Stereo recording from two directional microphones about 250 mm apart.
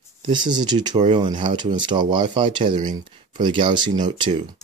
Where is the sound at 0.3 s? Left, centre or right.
Centre.